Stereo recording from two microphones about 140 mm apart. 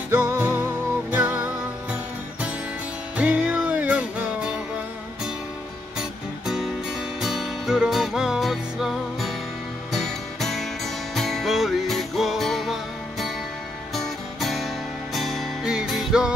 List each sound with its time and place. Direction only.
0.1 s music: 20° right (ahead or behind)
3.2 s music: 10° right (ahead or behind)
5.9 s music: 5° right (ahead or behind)
13.9 s music: centre (ahead or behind)